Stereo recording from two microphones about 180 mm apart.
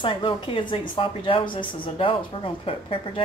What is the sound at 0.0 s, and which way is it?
Speech, 30° left (ahead or behind).